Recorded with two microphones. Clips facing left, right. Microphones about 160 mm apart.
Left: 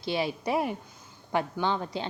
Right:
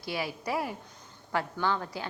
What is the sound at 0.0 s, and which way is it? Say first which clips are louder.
A woman's voice: left 5 dB; 25° left (ahead or behind).